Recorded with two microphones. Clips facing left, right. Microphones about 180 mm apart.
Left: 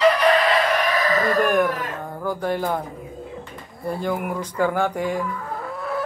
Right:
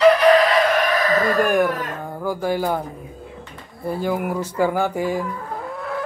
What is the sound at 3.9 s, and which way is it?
Speech, 5° right (ahead or behind).